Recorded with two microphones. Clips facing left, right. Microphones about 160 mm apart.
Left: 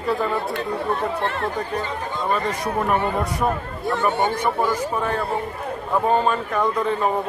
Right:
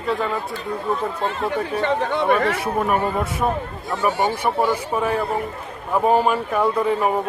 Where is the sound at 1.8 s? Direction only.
70° right (ahead or behind).